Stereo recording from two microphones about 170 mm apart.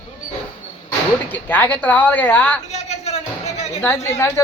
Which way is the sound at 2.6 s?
40° left (ahead or behind).